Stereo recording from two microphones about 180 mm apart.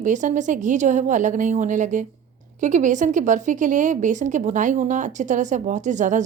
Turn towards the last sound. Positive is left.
turn(degrees=-45)  # may be behind; listen again after turning